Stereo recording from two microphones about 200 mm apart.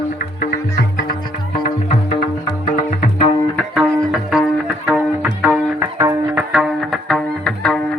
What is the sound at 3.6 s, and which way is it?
Tabla, 5° left (ahead or behind).